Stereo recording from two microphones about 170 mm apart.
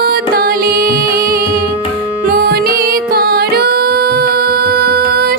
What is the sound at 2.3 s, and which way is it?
Music, 65° right (ahead or behind).